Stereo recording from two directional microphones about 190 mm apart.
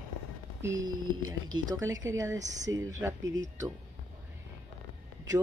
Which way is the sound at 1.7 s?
20° right (ahead or behind).